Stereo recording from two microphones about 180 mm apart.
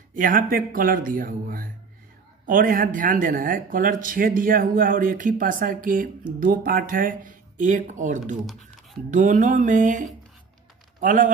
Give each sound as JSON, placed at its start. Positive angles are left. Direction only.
{"t": 0.1, "sound": "speech", "side_deg": -50}